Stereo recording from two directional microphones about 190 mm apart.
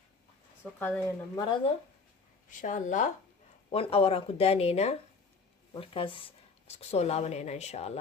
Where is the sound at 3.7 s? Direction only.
30° left (ahead or behind).